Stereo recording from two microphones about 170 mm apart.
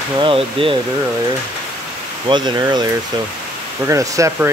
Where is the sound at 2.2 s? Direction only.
25° right (ahead or behind).